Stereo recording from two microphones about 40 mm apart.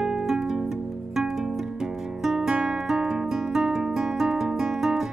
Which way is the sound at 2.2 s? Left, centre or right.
Centre.